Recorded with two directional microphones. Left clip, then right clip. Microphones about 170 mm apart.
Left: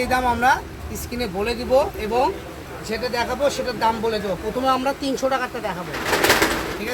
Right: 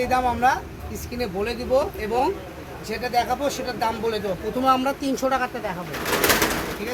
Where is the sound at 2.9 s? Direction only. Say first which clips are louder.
Right 1 dB; 35° right (ahead or behind).